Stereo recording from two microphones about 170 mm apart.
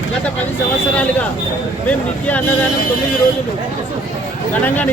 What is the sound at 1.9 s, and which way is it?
Speech, 10° left (ahead or behind).